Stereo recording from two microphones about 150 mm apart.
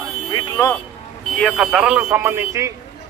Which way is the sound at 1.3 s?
Centre (ahead or behind).